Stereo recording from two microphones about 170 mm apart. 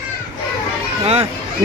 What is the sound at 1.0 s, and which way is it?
Speech, 35° right (ahead or behind).